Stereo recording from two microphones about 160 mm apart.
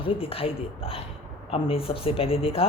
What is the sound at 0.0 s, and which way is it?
Speech, 35° left (ahead or behind).